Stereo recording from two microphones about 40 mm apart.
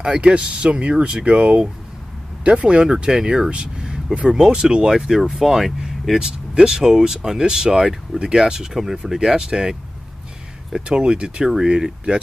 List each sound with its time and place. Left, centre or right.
0.0 s speech: right; by 5.9 s centre
6.1 s speech: right